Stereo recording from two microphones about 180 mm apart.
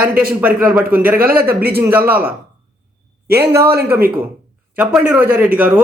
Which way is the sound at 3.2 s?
60° right (ahead or behind).